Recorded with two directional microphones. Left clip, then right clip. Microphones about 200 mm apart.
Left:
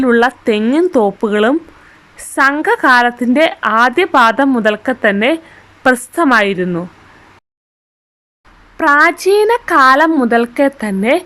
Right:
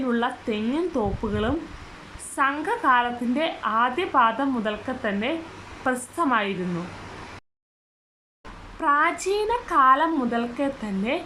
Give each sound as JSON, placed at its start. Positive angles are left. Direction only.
{"t": 0.0, "sound": "a woman's voice", "side_deg": 45}
{"t": 8.8, "sound": "a woman's voice", "side_deg": 45}